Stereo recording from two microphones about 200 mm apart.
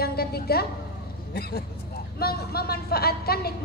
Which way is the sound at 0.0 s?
50° left (ahead or behind).